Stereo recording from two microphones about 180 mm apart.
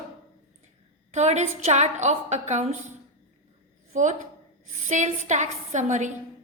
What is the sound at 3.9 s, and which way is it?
A woman's voice, 45° right (ahead or behind).